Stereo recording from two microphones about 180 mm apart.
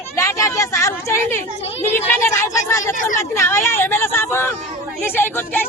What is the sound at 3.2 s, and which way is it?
Speech, 15° left (ahead or behind).